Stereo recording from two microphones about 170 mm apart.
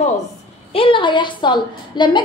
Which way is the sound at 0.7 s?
30° left (ahead or behind).